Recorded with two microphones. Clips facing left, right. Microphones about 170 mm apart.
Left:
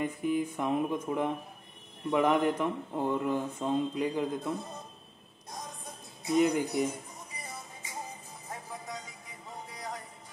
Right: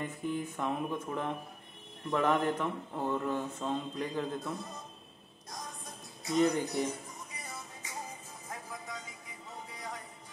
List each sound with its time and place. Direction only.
0.0 s speech: 10° left (ahead or behind)
6.3 s speech: 10° left (ahead or behind)
8.5 s music: 35° left (ahead or behind)